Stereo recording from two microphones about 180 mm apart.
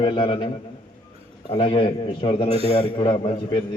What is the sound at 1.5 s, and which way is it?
A man's voice, 30° left (ahead or behind).